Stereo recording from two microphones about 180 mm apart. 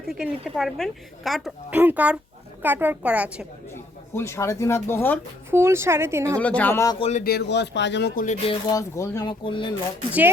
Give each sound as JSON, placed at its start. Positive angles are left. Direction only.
{"t": 0.1, "sound": "speech", "side_deg": 0}
{"t": 4.1, "sound": "speech", "side_deg": 15}
{"t": 5.5, "sound": "speech", "side_deg": -15}
{"t": 6.4, "sound": "speech", "side_deg": 10}
{"t": 7.0, "sound": "a man's voice", "side_deg": 40}
{"t": 7.3, "sound": "speech", "side_deg": 65}
{"t": 8.1, "sound": "speech", "side_deg": 45}
{"t": 8.7, "sound": "speech", "side_deg": 15}
{"t": 9.4, "sound": "speech", "side_deg": 30}